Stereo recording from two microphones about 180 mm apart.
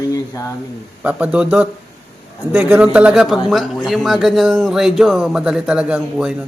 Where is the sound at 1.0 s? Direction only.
5° right (ahead or behind).